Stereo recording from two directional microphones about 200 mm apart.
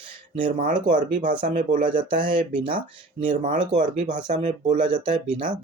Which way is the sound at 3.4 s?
40° right (ahead or behind).